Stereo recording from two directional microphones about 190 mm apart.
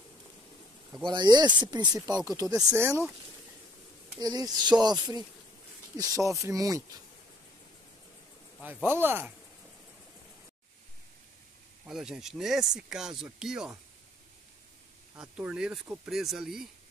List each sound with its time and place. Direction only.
1.1 s speech: 20° right (ahead or behind)
4.2 s speech: 20° right (ahead or behind)
8.8 s speech: 10° right (ahead or behind)
11.8 s speech: 5° right (ahead or behind)
15.1 s speech: 5° right (ahead or behind)